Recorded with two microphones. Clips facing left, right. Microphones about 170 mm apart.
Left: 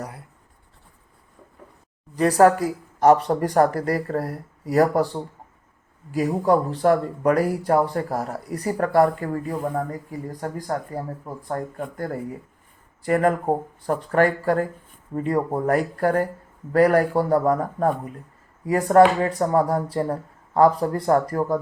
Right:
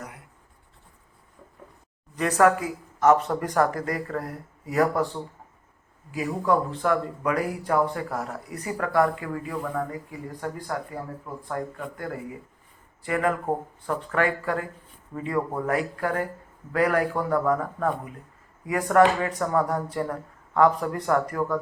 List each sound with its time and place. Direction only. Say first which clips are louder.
2.1 s speech: left 4 dB; 35° left (ahead or behind)